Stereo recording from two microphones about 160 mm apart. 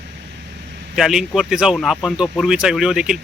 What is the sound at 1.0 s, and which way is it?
A man's voice, 5° right (ahead or behind).